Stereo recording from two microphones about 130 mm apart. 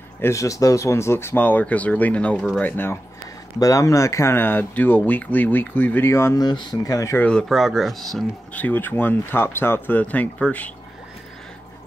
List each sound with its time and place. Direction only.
0.2 s speech: 25° left (ahead or behind); by 2.6 s 5° left (ahead or behind)
2.6 s speech: 15° left (ahead or behind)
3.5 s speech: 25° left (ahead or behind)
6.4 s speech: 35° left (ahead or behind)
7.2 s speech: 5° left (ahead or behind)
8.5 s speech: 15° left (ahead or behind)